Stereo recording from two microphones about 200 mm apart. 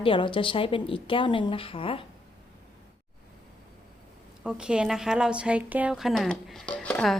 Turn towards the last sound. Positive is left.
turn(degrees=5)  # may be behind; listen again after turning